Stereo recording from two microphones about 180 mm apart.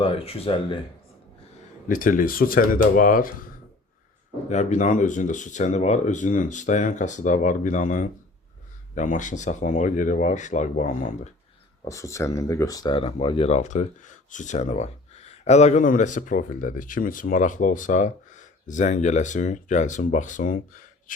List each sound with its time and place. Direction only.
0.0 s speech: 30° left (ahead or behind)
1.9 s speech: 50° left (ahead or behind)
4.4 s speech: 40° left (ahead or behind)
11.9 s speech: 15° left (ahead or behind); by 20.8 s 50° left (ahead or behind)